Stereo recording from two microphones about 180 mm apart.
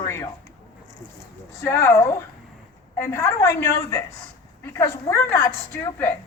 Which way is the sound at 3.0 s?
15° left (ahead or behind).